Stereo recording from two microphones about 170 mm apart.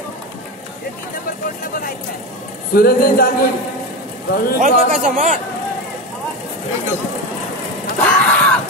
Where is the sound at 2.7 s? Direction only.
60° left (ahead or behind).